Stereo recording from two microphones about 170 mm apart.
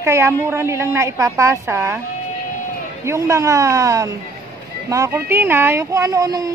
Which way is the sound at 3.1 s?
20° right (ahead or behind).